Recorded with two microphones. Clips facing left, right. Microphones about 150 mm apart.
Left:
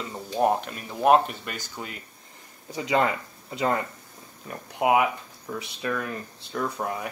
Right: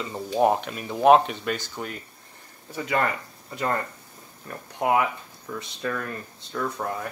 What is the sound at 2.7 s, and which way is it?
Speech, 20° left (ahead or behind).